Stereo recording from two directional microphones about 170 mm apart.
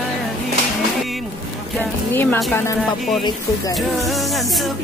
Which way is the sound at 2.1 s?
10° left (ahead or behind).